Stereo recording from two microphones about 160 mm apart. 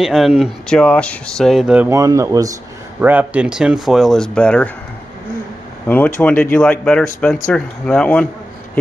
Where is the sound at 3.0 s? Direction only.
10° right (ahead or behind); by 4.7 s 5° left (ahead or behind).